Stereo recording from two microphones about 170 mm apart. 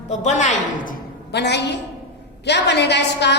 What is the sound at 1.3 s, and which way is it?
A woman's voice, 85° left.